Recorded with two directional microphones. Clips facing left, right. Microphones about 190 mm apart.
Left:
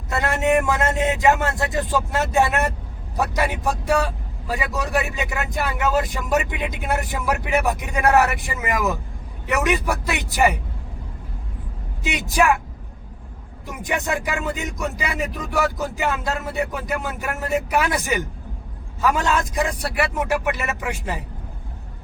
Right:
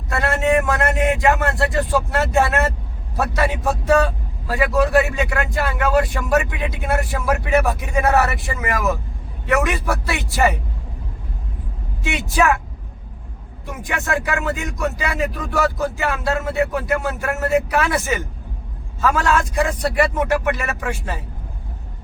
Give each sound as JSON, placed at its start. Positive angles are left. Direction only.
{"t": 0.1, "sound": "a man's voice", "side_deg": 20}
{"t": 12.0, "sound": "speech", "side_deg": 15}
{"t": 13.8, "sound": "speech", "side_deg": 20}